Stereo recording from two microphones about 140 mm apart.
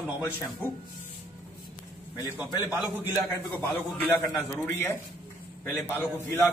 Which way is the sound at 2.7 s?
15° right (ahead or behind).